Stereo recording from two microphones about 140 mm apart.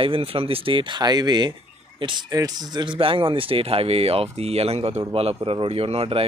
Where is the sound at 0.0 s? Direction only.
40° right (ahead or behind).